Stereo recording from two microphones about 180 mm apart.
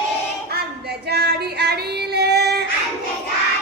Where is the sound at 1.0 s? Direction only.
65° right (ahead or behind).